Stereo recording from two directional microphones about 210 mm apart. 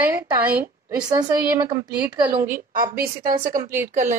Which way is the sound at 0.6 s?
15° right (ahead or behind).